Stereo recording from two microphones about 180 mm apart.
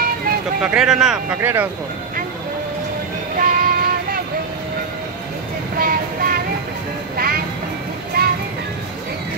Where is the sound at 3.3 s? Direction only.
50° right (ahead or behind).